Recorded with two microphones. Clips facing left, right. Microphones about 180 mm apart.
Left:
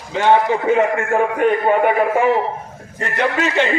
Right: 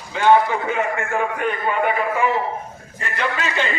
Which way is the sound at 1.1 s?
40° left (ahead or behind).